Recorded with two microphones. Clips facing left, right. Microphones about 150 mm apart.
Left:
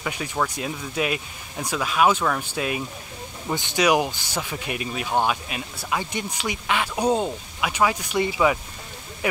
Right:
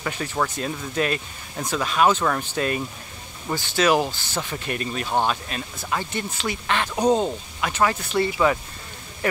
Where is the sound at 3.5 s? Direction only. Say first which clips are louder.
Even; 15° left (ahead or behind).